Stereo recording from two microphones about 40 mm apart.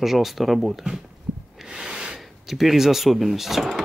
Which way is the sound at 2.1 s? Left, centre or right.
Centre.